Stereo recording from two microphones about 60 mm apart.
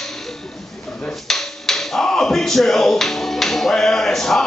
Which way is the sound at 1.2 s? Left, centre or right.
Centre.